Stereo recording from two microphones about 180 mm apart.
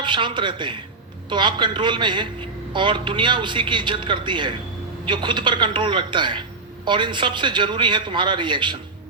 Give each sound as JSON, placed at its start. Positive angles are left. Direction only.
{"t": 0.0, "sound": "a man's voice", "side_deg": -25}